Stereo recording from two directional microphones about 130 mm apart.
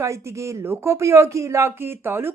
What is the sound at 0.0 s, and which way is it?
Speech, 25° right (ahead or behind).